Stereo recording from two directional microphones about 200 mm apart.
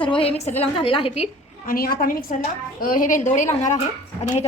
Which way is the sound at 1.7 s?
45° left (ahead or behind).